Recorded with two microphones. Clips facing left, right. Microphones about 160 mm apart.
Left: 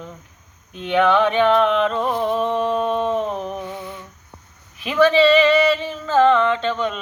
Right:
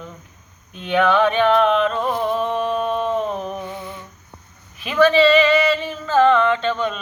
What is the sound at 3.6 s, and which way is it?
Lullaby, 10° left (ahead or behind).